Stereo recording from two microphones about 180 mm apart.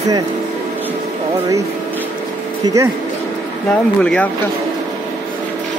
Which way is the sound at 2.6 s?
20° right (ahead or behind).